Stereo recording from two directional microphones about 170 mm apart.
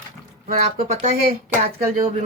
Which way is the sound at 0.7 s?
45° right (ahead or behind).